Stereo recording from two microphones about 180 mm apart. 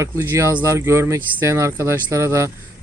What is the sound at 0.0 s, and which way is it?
Speech, 15° right (ahead or behind).